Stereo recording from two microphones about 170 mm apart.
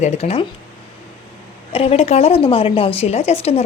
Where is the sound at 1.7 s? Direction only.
35° left (ahead or behind).